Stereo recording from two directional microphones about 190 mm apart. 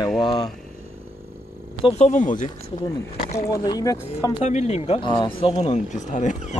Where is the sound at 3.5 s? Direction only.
20° left (ahead or behind).